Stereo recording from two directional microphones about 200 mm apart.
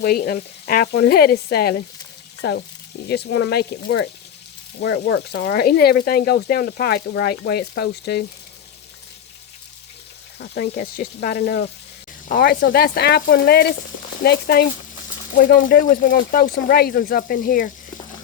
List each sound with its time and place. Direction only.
0.0 s speech: 50° left (ahead or behind)
5.0 s speech: 60° left (ahead or behind)
10.4 s speech: 50° left (ahead or behind)